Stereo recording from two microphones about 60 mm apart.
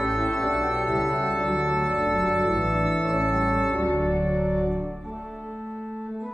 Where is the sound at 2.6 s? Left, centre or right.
Centre.